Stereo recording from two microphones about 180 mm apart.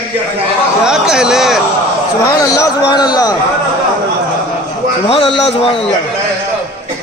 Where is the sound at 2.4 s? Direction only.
20° left (ahead or behind).